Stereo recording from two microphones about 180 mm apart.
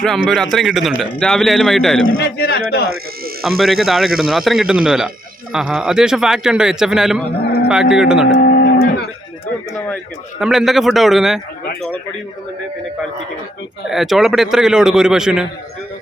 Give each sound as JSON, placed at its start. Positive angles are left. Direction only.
{"t": 0.0, "sound": "speech", "side_deg": 0}
{"t": 2.1, "sound": "a man's voice", "side_deg": 60}
{"t": 3.6, "sound": "speech", "side_deg": 0}
{"t": 8.3, "sound": "cattle", "side_deg": 55}
{"t": 10.4, "sound": "speech", "side_deg": 0}
{"t": 13.8, "sound": "speech", "side_deg": 0}